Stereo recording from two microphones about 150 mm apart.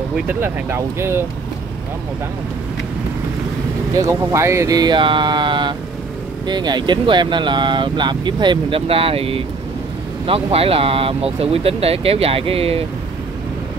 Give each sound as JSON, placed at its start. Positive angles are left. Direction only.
{"t": 0.3, "sound": "speech", "side_deg": -15}
{"t": 3.9, "sound": "speech", "side_deg": -20}